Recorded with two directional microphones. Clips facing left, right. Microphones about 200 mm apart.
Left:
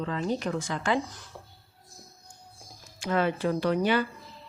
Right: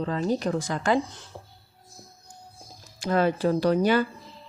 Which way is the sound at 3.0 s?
40° right (ahead or behind).